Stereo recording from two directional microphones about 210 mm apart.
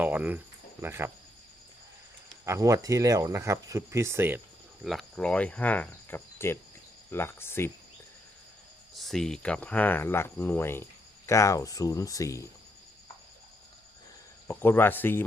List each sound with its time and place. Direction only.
0.0 s speech: 5° right (ahead or behind)
2.4 s speech: 15° right (ahead or behind)
4.8 s speech: centre (ahead or behind)
9.0 s speech: centre (ahead or behind)
14.4 s speech: 10° left (ahead or behind)